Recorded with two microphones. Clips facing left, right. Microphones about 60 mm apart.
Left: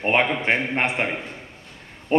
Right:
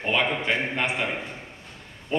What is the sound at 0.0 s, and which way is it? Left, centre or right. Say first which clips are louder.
A man's voice: left 4 dB; left.